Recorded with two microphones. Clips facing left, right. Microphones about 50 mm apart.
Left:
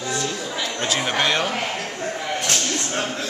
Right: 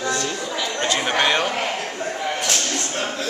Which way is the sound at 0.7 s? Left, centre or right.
Centre.